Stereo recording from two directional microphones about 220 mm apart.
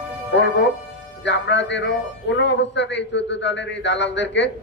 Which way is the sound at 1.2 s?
55° left (ahead or behind).